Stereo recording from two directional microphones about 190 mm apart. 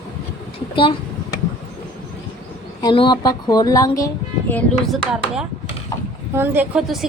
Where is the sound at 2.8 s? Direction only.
25° left (ahead or behind).